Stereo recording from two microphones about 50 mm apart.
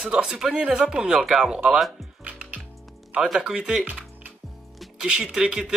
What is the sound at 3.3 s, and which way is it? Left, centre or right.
Speech, centre.